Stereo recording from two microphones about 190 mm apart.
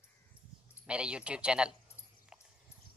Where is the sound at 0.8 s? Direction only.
5° right (ahead or behind).